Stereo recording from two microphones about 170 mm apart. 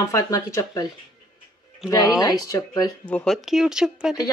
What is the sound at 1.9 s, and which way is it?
Speech, 20° left (ahead or behind).